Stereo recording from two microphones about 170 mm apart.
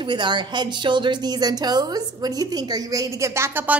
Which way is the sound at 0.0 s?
25° right (ahead or behind).